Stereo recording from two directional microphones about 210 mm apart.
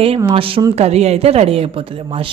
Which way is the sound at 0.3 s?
25° right (ahead or behind).